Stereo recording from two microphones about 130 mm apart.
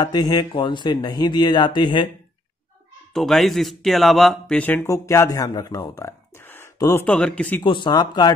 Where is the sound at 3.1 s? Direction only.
Centre (ahead or behind); by 7.0 s 25° left (ahead or behind).